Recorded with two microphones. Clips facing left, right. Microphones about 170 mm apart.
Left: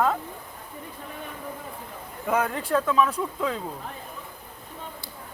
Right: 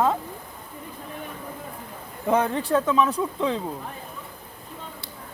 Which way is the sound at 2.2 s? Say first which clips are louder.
Right 3 dB; 25° right (ahead or behind).